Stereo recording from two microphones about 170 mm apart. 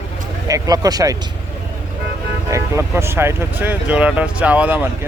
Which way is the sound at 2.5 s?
15° right (ahead or behind).